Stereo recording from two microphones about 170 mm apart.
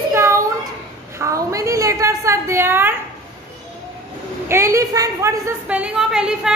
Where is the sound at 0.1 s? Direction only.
15° right (ahead or behind).